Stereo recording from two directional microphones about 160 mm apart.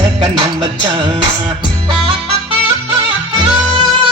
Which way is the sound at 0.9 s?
30° right (ahead or behind).